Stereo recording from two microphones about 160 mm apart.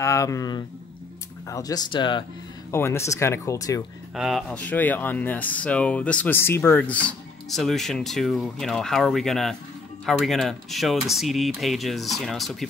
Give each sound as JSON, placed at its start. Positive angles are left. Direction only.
{"t": 0.0, "sound": "speech", "side_deg": 20}
{"t": 2.7, "sound": "speech", "side_deg": 15}
{"t": 4.1, "sound": "speech", "side_deg": 0}